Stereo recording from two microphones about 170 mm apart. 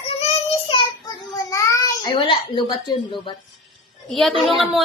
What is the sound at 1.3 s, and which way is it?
Child singing, 15° left (ahead or behind).